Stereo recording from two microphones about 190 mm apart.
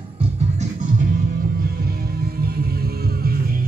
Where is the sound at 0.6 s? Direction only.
45° right (ahead or behind).